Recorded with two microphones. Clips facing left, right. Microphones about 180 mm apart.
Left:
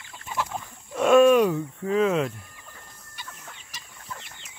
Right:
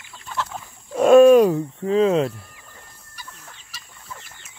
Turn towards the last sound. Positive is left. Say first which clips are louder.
# even
turn(degrees=25)  # may be behind; listen again after turning